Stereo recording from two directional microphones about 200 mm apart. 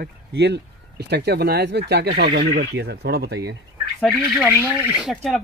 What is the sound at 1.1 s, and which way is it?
Speech, 55° right (ahead or behind).